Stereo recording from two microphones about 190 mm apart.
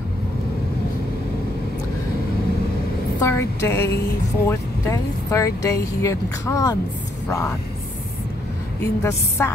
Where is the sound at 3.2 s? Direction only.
15° left (ahead or behind).